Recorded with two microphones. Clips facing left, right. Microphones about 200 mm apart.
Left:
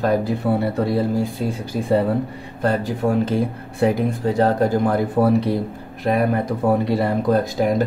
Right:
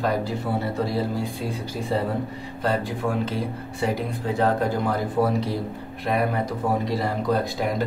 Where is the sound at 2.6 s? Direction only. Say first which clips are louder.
Left 5 dB; 45° left (ahead or behind).